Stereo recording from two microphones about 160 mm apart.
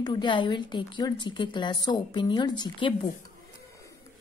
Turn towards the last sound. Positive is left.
turn(degrees=30)  # may be behind; listen again after turning